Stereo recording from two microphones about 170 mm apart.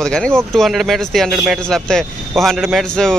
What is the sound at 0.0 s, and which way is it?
Speech, 5° left (ahead or behind).